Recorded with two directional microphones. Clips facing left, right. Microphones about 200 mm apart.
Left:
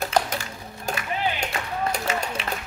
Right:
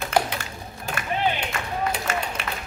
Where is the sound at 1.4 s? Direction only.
40° left (ahead or behind).